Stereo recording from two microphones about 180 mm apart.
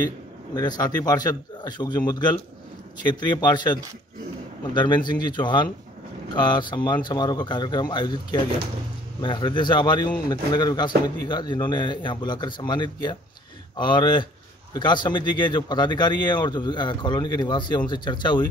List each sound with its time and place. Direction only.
0.6 s speech: 20° left (ahead or behind)